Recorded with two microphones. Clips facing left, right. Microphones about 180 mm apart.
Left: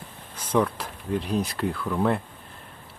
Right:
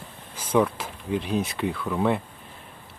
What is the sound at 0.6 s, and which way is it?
Speech, 5° right (ahead or behind).